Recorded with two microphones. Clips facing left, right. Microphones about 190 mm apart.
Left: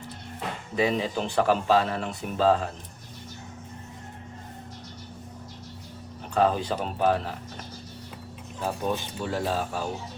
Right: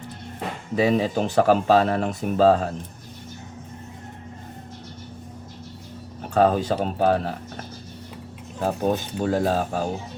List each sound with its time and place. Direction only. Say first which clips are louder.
0.8 s speech: right 5 dB; 40° right (ahead or behind)
6.3 s speech: right 5 dB; 45° right (ahead or behind)
8.6 s speech: right 6 dB; 45° right (ahead or behind)